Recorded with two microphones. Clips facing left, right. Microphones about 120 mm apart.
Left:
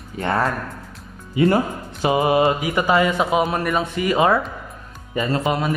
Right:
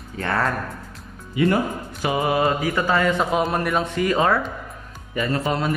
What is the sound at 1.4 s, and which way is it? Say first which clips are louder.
Speech: left 3 dB; 30° left (ahead or behind).